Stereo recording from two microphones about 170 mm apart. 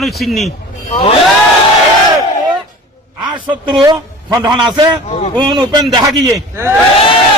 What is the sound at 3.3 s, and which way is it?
Speech, 30° right (ahead or behind).